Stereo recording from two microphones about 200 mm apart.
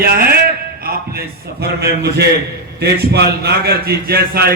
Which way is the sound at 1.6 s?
55° right (ahead or behind).